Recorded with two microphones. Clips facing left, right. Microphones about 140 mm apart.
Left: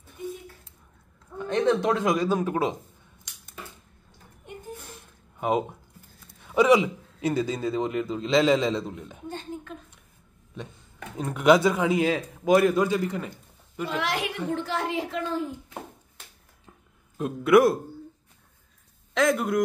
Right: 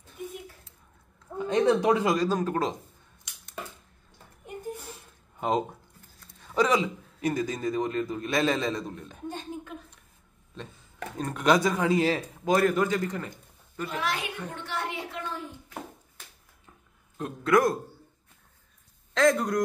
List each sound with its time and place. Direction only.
1.4 s speech: 10° right (ahead or behind)
2.2 s a man's voice: 10° left (ahead or behind)
5.4 s a man's voice: 10° left (ahead or behind)
11.1 s a man's voice: 5° left (ahead or behind)
13.8 s a woman's voice: 90° left
17.2 s a man's voice: 15° left (ahead or behind)
19.1 s a man's voice: 5° left (ahead or behind)